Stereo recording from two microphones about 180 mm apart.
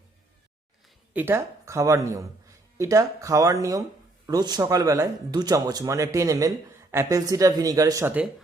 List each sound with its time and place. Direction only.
1.1 s speech: 10° right (ahead or behind)